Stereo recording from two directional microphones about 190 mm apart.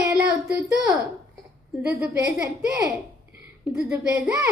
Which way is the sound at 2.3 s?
15° right (ahead or behind).